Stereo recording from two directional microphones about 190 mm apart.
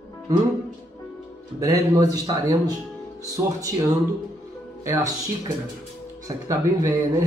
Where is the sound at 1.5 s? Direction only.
20° right (ahead or behind).